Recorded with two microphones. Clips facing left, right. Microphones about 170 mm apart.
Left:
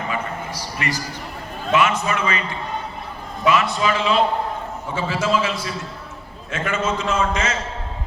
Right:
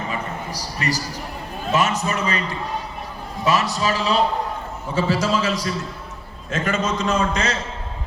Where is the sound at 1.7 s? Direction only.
40° right (ahead or behind).